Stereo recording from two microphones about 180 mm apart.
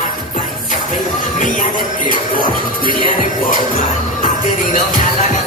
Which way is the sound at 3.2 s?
50° left (ahead or behind).